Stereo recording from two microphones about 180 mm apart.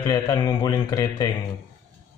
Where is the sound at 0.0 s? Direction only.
20° left (ahead or behind).